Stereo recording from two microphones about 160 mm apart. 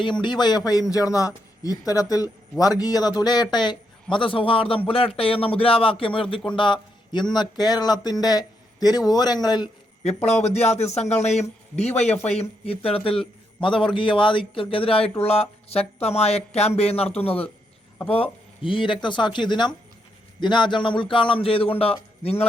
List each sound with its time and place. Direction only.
0.0 s speech: 30° left (ahead or behind)
10.0 s speech: 40° left (ahead or behind)